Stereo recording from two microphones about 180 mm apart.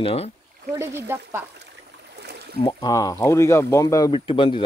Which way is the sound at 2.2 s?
65° right (ahead or behind).